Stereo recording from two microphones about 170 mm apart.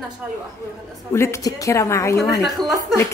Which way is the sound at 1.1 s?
15° left (ahead or behind).